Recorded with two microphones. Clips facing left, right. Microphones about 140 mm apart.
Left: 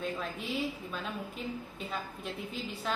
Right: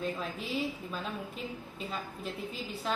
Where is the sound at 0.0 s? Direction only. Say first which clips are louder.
Right 1 dB; centre (ahead or behind).